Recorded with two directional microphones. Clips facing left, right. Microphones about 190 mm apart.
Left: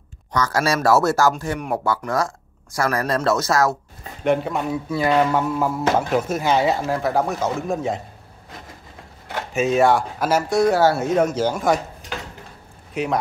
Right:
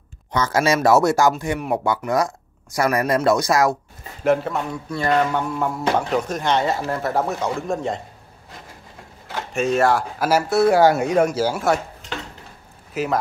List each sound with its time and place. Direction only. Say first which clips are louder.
0.3 s speech: right 2 dB; 25° right (ahead or behind)
4.2 s speech: right 1 dB; centre (ahead or behind)
9.5 s speech: left 1 dB; centre (ahead or behind)
12.9 s speech: even; centre (ahead or behind)